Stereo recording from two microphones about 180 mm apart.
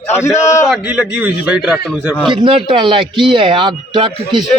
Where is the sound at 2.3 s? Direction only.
25° right (ahead or behind).